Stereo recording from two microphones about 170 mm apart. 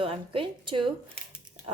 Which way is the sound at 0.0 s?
30° right (ahead or behind).